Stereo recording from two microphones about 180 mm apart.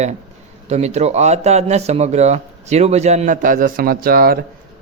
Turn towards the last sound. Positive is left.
turn(degrees=-55)  # may be behind; listen again after turning